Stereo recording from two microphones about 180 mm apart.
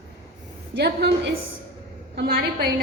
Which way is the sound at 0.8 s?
65° right (ahead or behind).